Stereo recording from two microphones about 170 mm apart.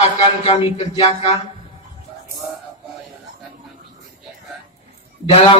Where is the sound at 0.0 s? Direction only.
35° left (ahead or behind).